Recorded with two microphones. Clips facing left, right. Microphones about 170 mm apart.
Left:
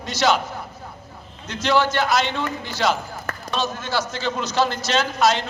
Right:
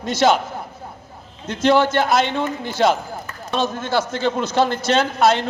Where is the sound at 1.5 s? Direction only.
50° right (ahead or behind).